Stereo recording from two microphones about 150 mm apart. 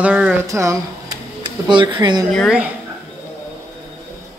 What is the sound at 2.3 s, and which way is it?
Speech, centre (ahead or behind).